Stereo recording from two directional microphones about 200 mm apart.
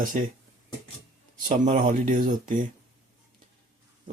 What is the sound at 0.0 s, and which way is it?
Speech, 40° right (ahead or behind).